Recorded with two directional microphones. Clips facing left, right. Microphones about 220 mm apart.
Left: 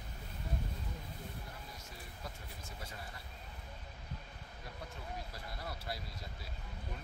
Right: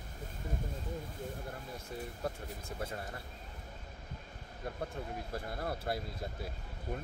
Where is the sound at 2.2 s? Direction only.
50° right (ahead or behind).